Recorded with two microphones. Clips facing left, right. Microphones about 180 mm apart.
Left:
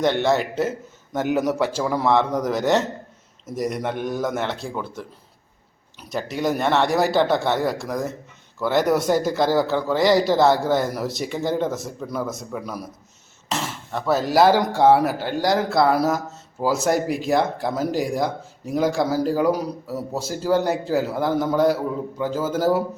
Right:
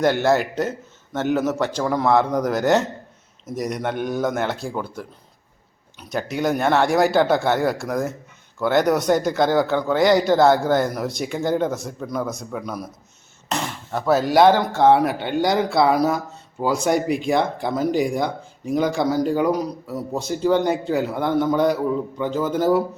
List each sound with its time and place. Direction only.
0.0 s speech: 5° right (ahead or behind)
1.1 s a man's voice: 10° left (ahead or behind)
6.1 s speech: centre (ahead or behind)